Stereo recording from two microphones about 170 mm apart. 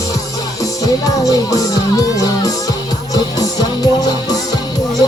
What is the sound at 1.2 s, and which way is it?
Music, 20° left (ahead or behind).